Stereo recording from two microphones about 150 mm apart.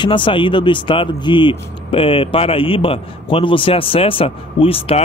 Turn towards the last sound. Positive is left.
turn(degrees=40)  # may be behind; listen again after turning